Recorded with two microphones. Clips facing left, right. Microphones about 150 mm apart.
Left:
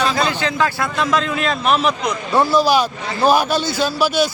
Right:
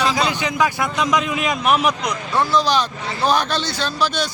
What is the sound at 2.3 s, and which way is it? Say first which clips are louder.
A man's voice: left 4 dB; 10° left (ahead or behind).